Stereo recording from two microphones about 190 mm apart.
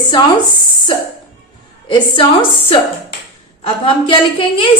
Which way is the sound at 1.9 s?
25° left (ahead or behind).